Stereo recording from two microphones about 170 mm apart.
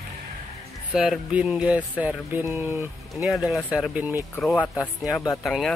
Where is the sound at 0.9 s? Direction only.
5° right (ahead or behind).